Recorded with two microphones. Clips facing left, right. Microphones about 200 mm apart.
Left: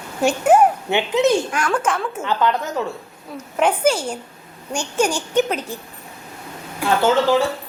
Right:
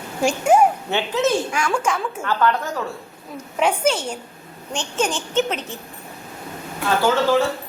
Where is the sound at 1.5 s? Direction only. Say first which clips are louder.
Left 1 dB; 10° right (ahead or behind).